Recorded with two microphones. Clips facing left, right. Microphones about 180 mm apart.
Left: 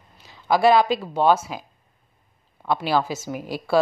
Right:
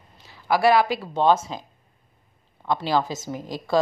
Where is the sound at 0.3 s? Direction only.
20° left (ahead or behind).